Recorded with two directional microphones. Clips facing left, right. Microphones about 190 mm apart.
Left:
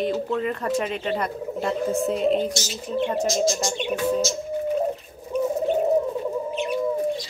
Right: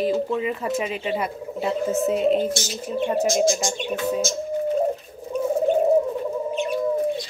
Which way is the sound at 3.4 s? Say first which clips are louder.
Right 2 dB; 50° right (ahead or behind).